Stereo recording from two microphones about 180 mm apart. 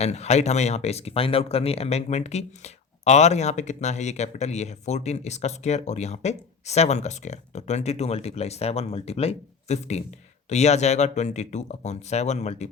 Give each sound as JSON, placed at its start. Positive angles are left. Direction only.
{"t": 0.0, "sound": "speech", "side_deg": 35}